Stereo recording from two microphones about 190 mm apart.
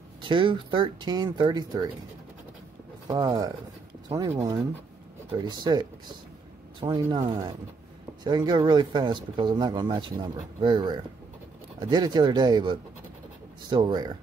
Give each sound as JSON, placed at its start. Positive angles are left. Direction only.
{"t": 0.2, "sound": "speech", "side_deg": -25}
{"t": 3.1, "sound": "speech", "side_deg": -20}